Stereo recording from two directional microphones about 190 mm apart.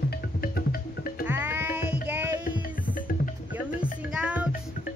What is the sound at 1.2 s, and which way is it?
Music, 10° right (ahead or behind).